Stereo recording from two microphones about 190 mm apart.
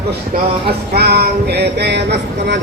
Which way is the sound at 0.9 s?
60° right (ahead or behind).